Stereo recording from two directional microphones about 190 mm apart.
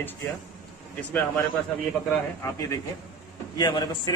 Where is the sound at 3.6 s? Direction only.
20° left (ahead or behind).